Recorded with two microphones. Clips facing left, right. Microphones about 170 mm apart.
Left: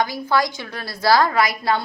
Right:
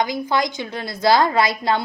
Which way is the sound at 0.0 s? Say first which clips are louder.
Even; 20° right (ahead or behind).